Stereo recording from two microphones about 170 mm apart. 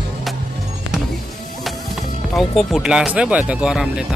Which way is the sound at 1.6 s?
Centre (ahead or behind).